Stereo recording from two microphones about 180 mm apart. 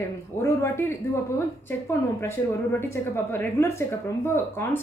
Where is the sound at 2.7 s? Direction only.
10° left (ahead or behind).